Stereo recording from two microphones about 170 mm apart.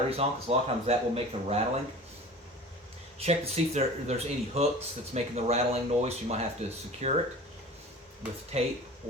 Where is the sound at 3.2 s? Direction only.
40° right (ahead or behind).